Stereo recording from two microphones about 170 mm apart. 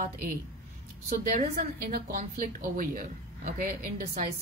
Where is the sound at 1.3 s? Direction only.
55° right (ahead or behind).